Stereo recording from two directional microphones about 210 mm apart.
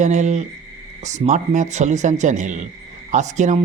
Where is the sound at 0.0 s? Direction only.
35° right (ahead or behind).